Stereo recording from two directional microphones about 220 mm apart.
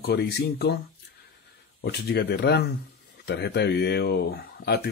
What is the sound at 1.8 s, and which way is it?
Speech, 45° left (ahead or behind).